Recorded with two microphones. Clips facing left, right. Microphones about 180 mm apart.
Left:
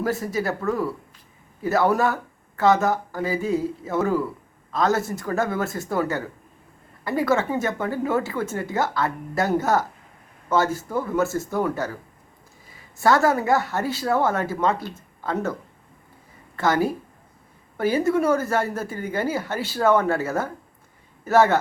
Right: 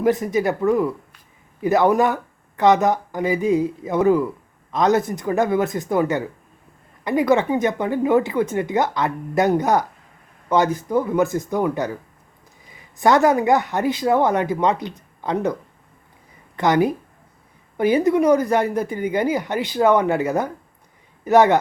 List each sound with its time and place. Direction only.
0.0 s speech: 20° right (ahead or behind)
13.0 s speech: 20° right (ahead or behind)
16.6 s speech: 20° right (ahead or behind)